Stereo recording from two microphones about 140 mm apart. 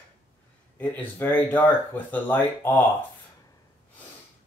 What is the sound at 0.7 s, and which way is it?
Speech, 15° left (ahead or behind).